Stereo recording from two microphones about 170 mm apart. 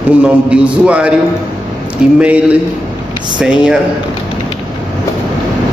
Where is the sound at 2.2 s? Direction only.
10° right (ahead or behind).